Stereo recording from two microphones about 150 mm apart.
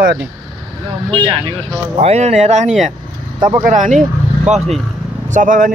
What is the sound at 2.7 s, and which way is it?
Speech, centre (ahead or behind).